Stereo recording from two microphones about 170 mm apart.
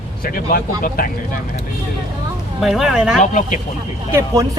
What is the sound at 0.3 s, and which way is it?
Speech, 55° left (ahead or behind).